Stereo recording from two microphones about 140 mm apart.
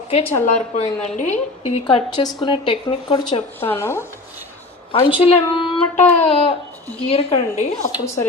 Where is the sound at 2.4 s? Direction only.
35° left (ahead or behind).